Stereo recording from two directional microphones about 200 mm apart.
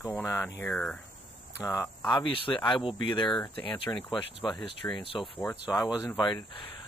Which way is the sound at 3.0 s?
20° left (ahead or behind).